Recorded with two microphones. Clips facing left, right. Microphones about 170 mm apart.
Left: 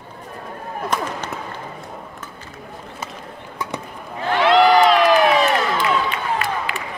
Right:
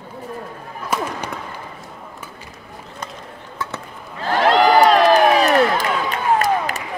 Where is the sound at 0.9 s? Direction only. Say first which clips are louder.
Right 1 dB; 5° right (ahead or behind).